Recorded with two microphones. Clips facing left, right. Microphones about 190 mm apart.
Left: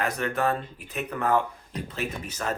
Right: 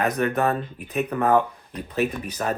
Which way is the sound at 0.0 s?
20° right (ahead or behind).